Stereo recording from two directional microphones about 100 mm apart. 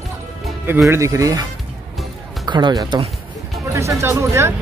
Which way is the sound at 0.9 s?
30° right (ahead or behind).